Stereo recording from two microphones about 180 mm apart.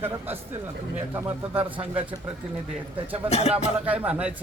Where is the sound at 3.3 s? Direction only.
35° left (ahead or behind).